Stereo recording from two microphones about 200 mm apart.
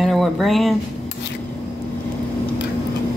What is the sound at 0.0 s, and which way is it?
Speech, centre (ahead or behind).